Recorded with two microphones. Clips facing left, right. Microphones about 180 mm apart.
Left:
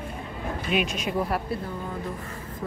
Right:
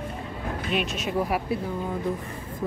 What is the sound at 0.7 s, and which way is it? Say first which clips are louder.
Speech: left 1 dB; centre (ahead or behind).